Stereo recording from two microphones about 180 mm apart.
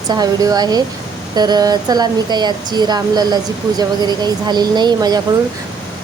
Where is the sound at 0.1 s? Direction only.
20° right (ahead or behind).